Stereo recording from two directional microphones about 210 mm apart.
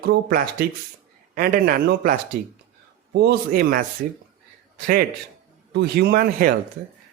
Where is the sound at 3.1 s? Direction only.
50° right (ahead or behind).